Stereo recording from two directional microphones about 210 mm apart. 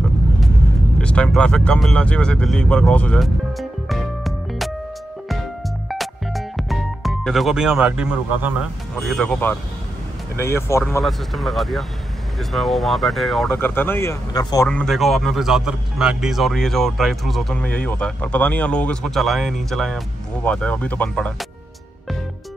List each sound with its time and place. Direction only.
0.9 s speech: 5° left (ahead or behind)
5.9 s music: centre (ahead or behind)
9.0 s speech: 5° left (ahead or behind)
11.1 s speech: centre (ahead or behind)